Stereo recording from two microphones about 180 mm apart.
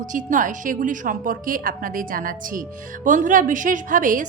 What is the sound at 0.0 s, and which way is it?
Speech, 45° right (ahead or behind).